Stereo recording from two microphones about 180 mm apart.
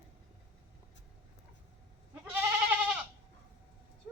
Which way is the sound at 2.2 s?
10° right (ahead or behind).